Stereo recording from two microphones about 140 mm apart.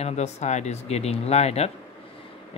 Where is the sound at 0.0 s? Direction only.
50° left (ahead or behind).